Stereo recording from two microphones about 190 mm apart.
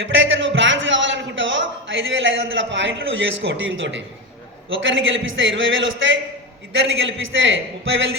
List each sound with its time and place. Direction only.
0.0 s a man's voice: 85° right